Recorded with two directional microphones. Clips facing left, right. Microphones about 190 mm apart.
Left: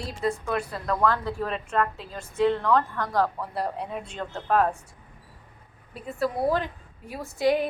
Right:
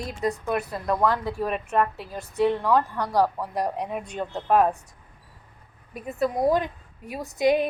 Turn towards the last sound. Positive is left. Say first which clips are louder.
# right 2 dB
turn(degrees=-15)  # may be behind; listen again after turning